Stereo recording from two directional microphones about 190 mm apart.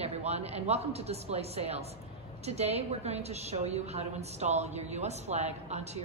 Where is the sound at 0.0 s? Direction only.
35° right (ahead or behind).